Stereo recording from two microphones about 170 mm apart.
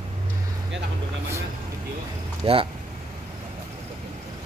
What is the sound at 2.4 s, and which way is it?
Speech, 30° right (ahead or behind).